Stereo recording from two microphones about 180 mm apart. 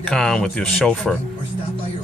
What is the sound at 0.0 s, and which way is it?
Speech, 5° left (ahead or behind).